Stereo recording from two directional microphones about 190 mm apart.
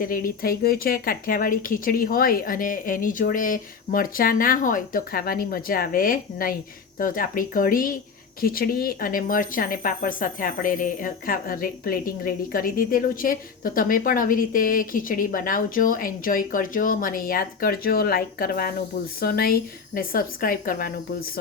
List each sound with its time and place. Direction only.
0.0 s speech: 45° left (ahead or behind)